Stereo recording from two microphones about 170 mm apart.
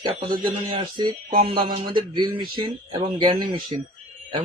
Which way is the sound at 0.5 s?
30° right (ahead or behind).